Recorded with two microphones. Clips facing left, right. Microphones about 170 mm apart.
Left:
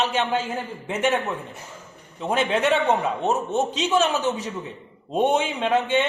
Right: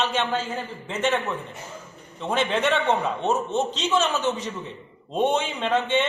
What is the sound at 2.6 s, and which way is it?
Speech, 40° left (ahead or behind).